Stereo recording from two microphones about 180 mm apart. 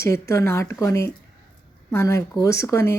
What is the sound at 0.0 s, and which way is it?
Speech, 15° left (ahead or behind).